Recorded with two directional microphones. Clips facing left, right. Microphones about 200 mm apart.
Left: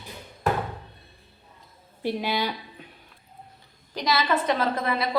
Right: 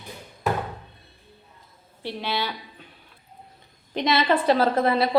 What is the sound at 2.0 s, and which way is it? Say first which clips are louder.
Speech: left 2 dB; 15° left (ahead or behind).